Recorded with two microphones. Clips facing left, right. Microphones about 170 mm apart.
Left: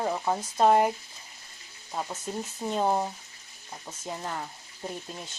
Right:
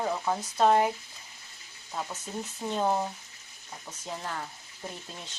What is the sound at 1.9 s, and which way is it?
Speech, 10° left (ahead or behind).